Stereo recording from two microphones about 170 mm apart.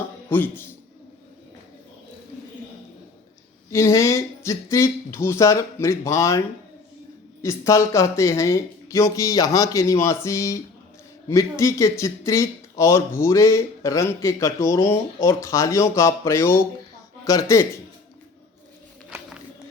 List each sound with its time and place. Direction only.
0.3 s speech: 10° left (ahead or behind)
3.7 s speech: 15° left (ahead or behind)
7.4 s speech: 15° left (ahead or behind)